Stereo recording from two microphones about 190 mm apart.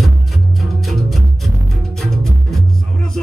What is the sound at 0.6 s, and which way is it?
Music, centre (ahead or behind).